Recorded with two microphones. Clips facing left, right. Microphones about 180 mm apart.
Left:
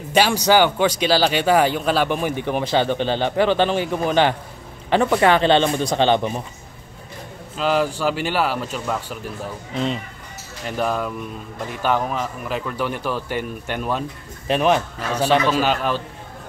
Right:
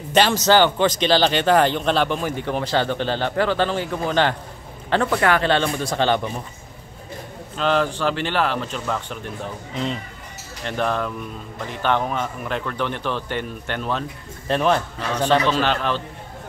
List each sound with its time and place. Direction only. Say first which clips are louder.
0.1 s a man's voice: even; 10° left (ahead or behind)
7.5 s speech: left 1 dB; 5° left (ahead or behind)
10.6 s speech: even; 5° left (ahead or behind)